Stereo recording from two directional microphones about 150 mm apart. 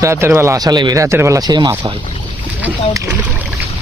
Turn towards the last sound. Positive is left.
turn(degrees=-15)  # may be behind; listen again after turning